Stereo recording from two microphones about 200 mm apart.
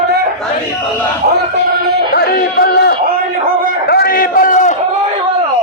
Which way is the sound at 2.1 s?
50° left (ahead or behind).